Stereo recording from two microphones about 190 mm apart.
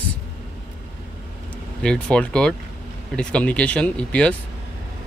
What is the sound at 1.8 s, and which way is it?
Speech, 5° left (ahead or behind).